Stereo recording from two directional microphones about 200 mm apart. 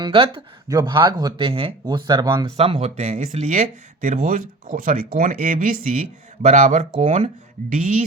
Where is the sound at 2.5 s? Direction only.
30° right (ahead or behind).